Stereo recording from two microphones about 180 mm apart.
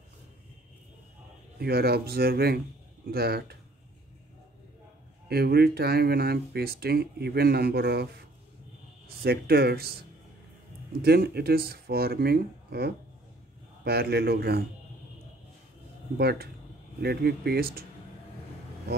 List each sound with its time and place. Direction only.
1.6 s speech: 60° right (ahead or behind)
5.3 s speech: 60° right (ahead or behind)
9.2 s speech: 60° right (ahead or behind)
11.0 s speech: 60° right (ahead or behind)
16.2 s speech: 65° right (ahead or behind)